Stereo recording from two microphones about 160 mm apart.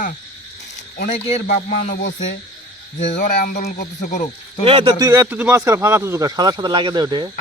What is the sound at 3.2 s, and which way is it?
Speech, 60° left (ahead or behind).